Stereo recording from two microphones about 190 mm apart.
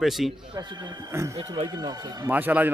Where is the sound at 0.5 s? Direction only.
25° right (ahead or behind).